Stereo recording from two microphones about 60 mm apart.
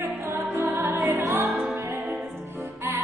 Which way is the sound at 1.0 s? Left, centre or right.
Right.